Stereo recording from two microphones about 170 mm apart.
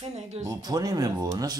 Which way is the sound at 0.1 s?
40° right (ahead or behind).